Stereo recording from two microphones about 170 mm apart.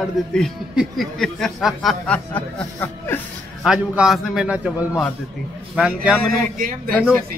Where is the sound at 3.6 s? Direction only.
5° right (ahead or behind).